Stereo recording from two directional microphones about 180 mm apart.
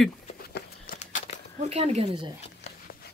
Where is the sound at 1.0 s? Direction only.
40° left (ahead or behind).